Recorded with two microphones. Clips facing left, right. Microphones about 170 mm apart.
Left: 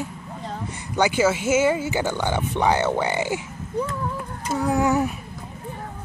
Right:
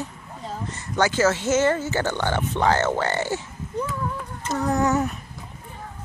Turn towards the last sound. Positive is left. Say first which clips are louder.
# left 1 dB
turn(degrees=10)  # may be behind; listen again after turning